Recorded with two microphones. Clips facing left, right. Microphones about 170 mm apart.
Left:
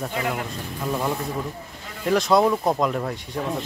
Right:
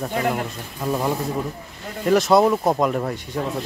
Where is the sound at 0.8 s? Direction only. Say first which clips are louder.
Right 3 dB; 10° right (ahead or behind).